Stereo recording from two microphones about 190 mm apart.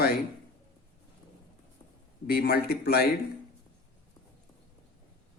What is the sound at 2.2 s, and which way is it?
Speech, 55° left (ahead or behind).